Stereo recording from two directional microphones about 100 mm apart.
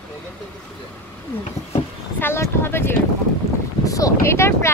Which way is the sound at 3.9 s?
35° left (ahead or behind).